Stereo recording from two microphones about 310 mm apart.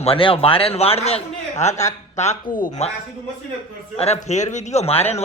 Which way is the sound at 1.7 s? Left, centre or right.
Centre.